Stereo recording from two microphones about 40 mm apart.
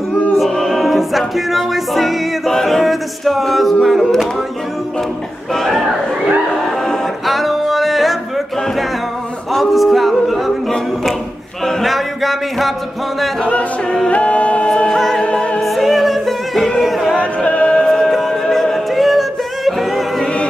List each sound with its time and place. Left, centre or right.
0.5 s music: centre
2.5 s a capella: centre
5.5 s speech: centre
7.2 s music: centre
9.5 s music: centre
11.8 s music: centre
13.8 s music: centre
14.1 s a capella: left
14.9 s music: centre
15.3 s music: left
15.6 s music: centre
17.5 s music: left
17.8 s music: centre